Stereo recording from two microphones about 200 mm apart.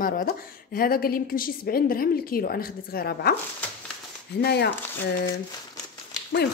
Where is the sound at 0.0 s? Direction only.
45° left (ahead or behind).